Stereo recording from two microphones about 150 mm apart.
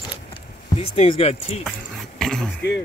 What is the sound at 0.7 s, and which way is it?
Speech, 40° left (ahead or behind).